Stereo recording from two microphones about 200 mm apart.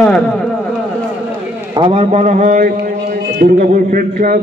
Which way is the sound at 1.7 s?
25° right (ahead or behind).